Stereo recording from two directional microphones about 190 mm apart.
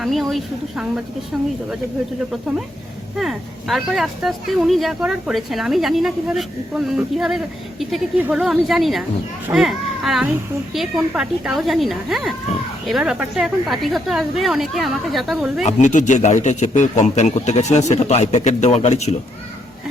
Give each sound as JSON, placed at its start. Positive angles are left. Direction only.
{"t": 0.0, "sound": "speech", "side_deg": 0}
{"t": 3.2, "sound": "speech", "side_deg": 0}
{"t": 15.6, "sound": "a man's voice", "side_deg": 40}